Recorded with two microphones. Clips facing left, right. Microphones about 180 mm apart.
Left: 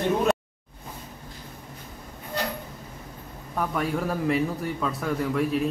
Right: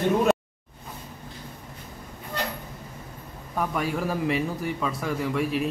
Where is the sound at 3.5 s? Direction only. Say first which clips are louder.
Even; centre (ahead or behind).